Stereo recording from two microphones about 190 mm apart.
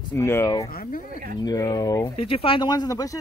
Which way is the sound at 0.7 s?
50° left (ahead or behind).